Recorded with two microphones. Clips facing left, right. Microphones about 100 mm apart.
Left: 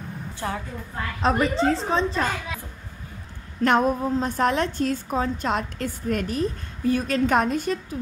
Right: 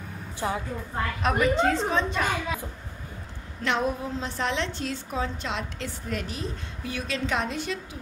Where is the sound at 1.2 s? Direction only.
30° left (ahead or behind).